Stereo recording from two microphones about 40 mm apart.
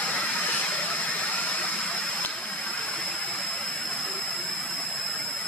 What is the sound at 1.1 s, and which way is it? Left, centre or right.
Engine, left.